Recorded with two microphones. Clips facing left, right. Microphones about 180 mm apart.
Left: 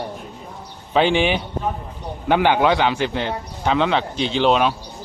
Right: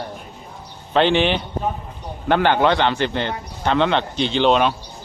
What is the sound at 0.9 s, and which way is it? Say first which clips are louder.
Speech: even; 5° left (ahead or behind).